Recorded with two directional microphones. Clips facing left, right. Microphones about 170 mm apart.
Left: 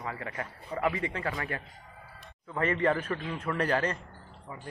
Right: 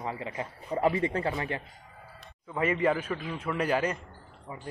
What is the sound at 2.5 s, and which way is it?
A man's voice, 10° right (ahead or behind).